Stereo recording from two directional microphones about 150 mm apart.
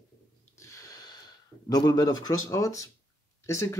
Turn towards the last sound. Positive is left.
turn(degrees=20)  # may be behind; listen again after turning